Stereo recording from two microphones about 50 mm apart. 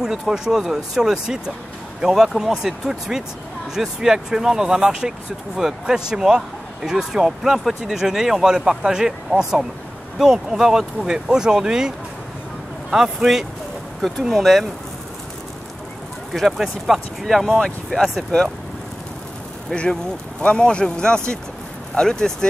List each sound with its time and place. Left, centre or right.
0.0 s speech: centre
12.9 s speech: centre
16.3 s speech: centre
17.6 s speech: centre
19.7 s speech: centre